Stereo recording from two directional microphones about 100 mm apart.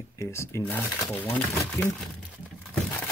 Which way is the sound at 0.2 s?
30° left (ahead or behind).